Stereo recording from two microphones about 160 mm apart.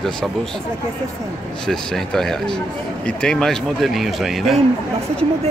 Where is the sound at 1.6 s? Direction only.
5° left (ahead or behind).